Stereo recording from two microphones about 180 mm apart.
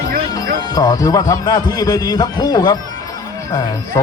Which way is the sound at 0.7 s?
20° left (ahead or behind).